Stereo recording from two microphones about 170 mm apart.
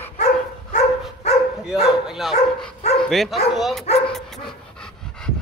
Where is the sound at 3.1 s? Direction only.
Centre (ahead or behind).